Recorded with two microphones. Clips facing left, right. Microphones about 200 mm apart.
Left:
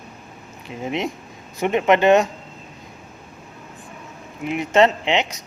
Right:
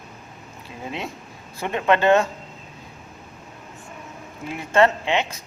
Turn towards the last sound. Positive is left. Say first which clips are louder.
# left 2 dB
turn(degrees=20)  # may be behind; listen again after turning